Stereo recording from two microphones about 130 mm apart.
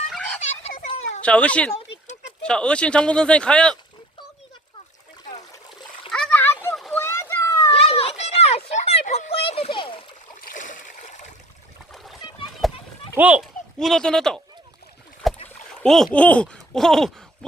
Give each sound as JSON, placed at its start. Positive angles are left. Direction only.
{"t": 0.3, "sound": "a sound", "side_deg": 55}
{"t": 1.2, "sound": "speech", "side_deg": 10}
{"t": 6.1, "sound": "splash", "side_deg": 5}
{"t": 6.4, "sound": "a sound", "side_deg": 15}
{"t": 7.7, "sound": "children playing", "side_deg": 50}
{"t": 9.3, "sound": "a sound", "side_deg": 45}
{"t": 10.5, "sound": "stream", "side_deg": 85}
{"t": 11.9, "sound": "splash", "side_deg": 0}
{"t": 12.6, "sound": "a sound", "side_deg": 0}
{"t": 13.1, "sound": "speech", "side_deg": -10}
{"t": 13.4, "sound": "a child's voice", "side_deg": 0}
{"t": 15.4, "sound": "speech", "side_deg": 5}